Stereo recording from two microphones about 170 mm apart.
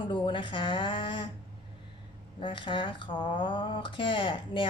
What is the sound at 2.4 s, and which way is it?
Speech, 30° left (ahead or behind).